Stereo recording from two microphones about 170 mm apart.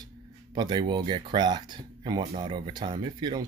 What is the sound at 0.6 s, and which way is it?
Speech, 25° right (ahead or behind).